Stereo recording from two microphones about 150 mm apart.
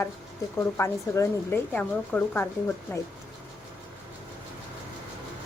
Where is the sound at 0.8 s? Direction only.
20° left (ahead or behind).